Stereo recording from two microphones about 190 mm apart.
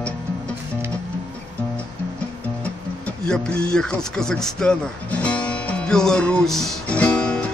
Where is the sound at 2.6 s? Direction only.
5° left (ahead or behind).